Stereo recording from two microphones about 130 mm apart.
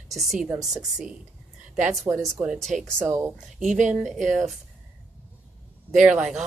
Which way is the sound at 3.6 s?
70° right (ahead or behind).